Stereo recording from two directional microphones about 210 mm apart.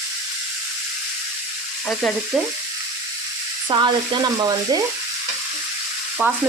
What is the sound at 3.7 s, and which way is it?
Speech, 20° right (ahead or behind).